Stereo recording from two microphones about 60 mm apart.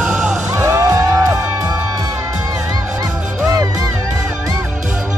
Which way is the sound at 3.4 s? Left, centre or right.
Right.